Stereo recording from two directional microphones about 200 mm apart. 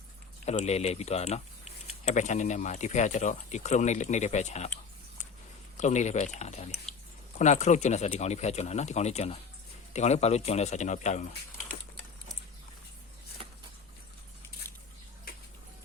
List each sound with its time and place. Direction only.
0.4 s speech: 35° left (ahead or behind)
5.7 s speech: 35° left (ahead or behind)
13.4 s a sound: 25° right (ahead or behind)